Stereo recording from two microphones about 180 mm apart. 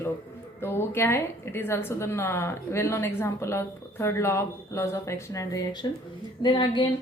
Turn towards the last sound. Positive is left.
turn(degrees=25)  # may be behind; listen again after turning